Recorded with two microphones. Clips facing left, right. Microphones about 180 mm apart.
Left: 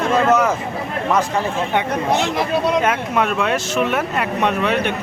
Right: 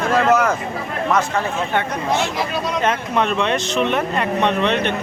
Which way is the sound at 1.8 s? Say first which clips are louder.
Left 2 dB; 15° left (ahead or behind).